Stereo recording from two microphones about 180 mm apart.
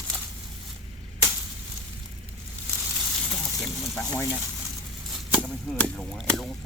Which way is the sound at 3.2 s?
5° left (ahead or behind).